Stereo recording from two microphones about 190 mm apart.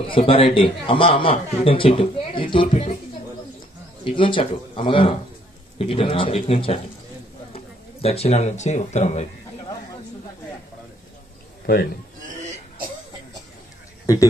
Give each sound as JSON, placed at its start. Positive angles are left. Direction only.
{"t": 0.3, "sound": "a man's voice", "side_deg": 30}
{"t": 4.0, "sound": "a man's voice", "side_deg": 30}
{"t": 11.6, "sound": "speech", "side_deg": 55}
{"t": 12.2, "sound": "throat clearing", "side_deg": -40}